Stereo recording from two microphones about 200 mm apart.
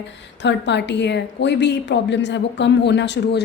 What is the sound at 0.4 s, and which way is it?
A woman's voice, 60° left (ahead or behind).